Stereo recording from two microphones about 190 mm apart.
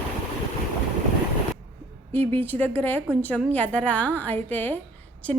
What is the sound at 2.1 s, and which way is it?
A woman's voice, 10° left (ahead or behind).